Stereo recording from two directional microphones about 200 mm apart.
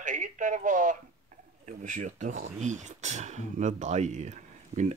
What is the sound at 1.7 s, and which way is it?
Speech, 40° right (ahead or behind).